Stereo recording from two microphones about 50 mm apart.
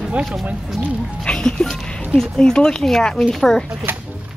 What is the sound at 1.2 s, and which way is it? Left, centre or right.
Speech, centre.